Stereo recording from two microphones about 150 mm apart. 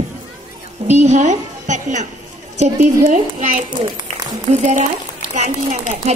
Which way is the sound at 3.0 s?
60° right (ahead or behind).